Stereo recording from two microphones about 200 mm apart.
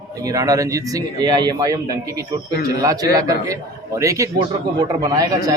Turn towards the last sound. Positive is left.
turn(degrees=-20)  # may be behind; listen again after turning